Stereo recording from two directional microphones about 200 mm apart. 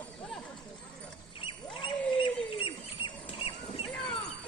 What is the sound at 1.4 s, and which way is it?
Rodents, 25° left (ahead or behind).